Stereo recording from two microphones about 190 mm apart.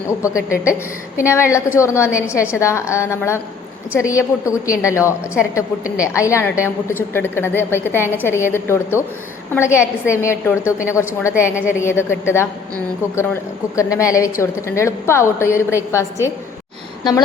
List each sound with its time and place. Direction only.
0.2 s a woman's voice: 15° left (ahead or behind)
2.2 s a woman's voice: 5° right (ahead or behind)
2.5 s a woman's voice: 15° left (ahead or behind)
6.0 s a woman's voice: 15° left (ahead or behind)
11.5 s a woman's voice: 10° right (ahead or behind)
11.8 s a woman's voice: 15° left (ahead or behind)